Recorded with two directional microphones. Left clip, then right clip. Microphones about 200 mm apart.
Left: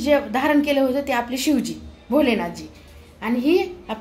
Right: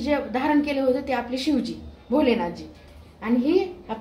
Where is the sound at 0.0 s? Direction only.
55° left (ahead or behind).